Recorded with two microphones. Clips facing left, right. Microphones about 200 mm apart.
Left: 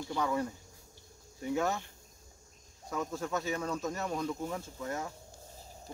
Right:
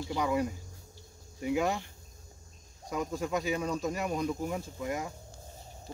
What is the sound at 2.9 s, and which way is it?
Speech, 15° right (ahead or behind).